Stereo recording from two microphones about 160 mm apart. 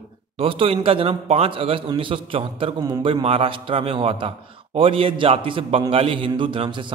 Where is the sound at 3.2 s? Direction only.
35° right (ahead or behind).